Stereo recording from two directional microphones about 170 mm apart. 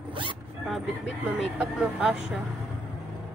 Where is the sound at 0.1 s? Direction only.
30° right (ahead or behind).